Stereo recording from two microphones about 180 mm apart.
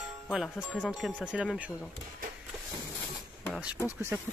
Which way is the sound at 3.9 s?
10° right (ahead or behind).